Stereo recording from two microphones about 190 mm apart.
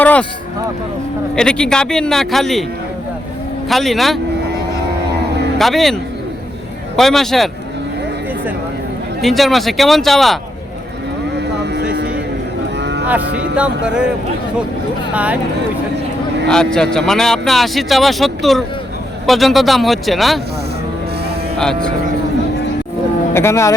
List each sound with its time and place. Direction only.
0.0 s a sound: 5° left (ahead or behind)
1.4 s speech: 5° left (ahead or behind)
3.7 s speech: centre (ahead or behind)
5.5 s speech: centre (ahead or behind)
9.2 s speech: centre (ahead or behind)
11.6 s a sound: 60° right (ahead or behind)
12.8 s cattle: 65° right (ahead or behind)
13.2 s speech: 60° right (ahead or behind)
13.6 s speech: 5° right (ahead or behind)
15.1 s speech: 5° right (ahead or behind)
16.5 s speech: 5° left (ahead or behind)
23.3 s speech: 15° left (ahead or behind)